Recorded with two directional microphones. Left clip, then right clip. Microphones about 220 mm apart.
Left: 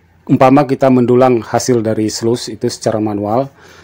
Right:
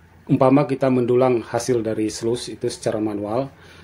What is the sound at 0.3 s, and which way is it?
Speech, 30° left (ahead or behind).